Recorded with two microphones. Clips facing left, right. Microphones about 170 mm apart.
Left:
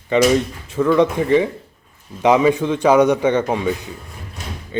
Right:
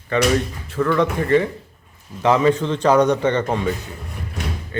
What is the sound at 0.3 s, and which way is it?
A man's voice, 15° left (ahead or behind).